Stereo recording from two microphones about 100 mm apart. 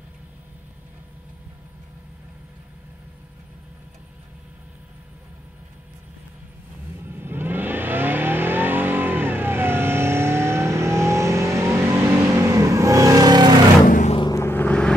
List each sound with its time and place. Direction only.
7.1 s vehicle: 20° right (ahead or behind); by 13.6 s 45° right (ahead or behind)
14.3 s vehicle: 25° left (ahead or behind)